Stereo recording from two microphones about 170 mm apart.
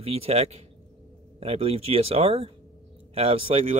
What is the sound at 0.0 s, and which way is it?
Speech, 35° right (ahead or behind).